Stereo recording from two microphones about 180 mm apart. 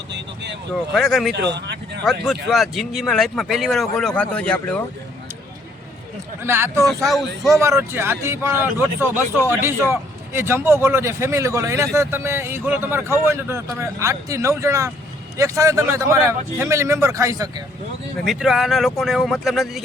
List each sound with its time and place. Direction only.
0.7 s speech: centre (ahead or behind)
1.3 s speech: 70° right (ahead or behind)
2.2 s speech: centre (ahead or behind)
6.4 s speech: 15° right (ahead or behind)
6.8 s speech: centre (ahead or behind)
7.5 s speech: 15° right (ahead or behind)
18.3 s speech: centre (ahead or behind)